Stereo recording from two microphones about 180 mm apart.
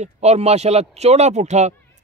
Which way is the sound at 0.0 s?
35° right (ahead or behind).